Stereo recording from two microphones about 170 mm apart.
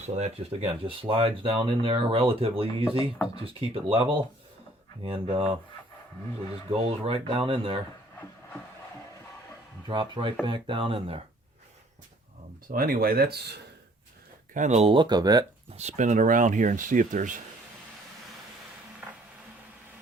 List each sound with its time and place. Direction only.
0.2 s speech: 35° right (ahead or behind)
5.0 s speech: 35° right (ahead or behind)
6.7 s speech: 35° right (ahead or behind)
9.8 s speech: 30° right (ahead or behind)
12.7 s speech: 60° right (ahead or behind)
14.5 s speech: 45° right (ahead or behind); by 15.4 s 25° right (ahead or behind)
15.7 s speech: 40° right (ahead or behind)
19.0 s a sound: 10° right (ahead or behind)